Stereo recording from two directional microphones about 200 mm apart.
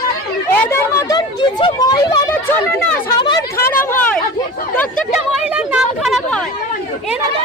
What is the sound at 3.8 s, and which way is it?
Speech, 10° left (ahead or behind).